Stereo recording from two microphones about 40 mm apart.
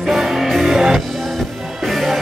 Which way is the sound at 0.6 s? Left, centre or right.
Centre.